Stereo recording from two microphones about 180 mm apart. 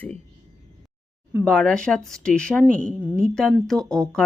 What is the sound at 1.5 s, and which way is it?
Speech, 5° left (ahead or behind).